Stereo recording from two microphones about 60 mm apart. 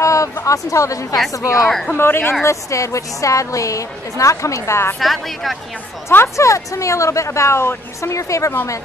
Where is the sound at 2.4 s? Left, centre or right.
Left.